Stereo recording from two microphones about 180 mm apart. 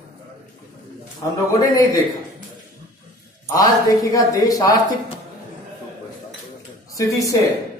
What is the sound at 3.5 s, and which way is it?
Speech, 20° left (ahead or behind).